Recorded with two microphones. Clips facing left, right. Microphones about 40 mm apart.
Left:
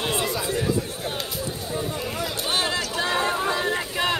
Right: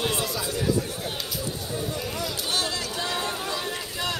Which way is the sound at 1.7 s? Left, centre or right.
Left.